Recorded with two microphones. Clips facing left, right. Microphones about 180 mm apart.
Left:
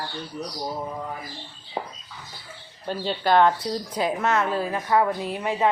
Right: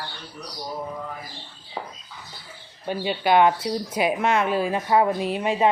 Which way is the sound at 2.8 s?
10° right (ahead or behind).